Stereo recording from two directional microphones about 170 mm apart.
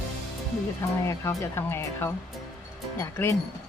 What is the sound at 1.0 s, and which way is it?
Speech, 20° left (ahead or behind).